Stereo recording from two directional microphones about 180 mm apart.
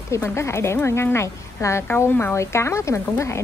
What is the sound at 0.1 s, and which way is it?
Speech, 15° left (ahead or behind).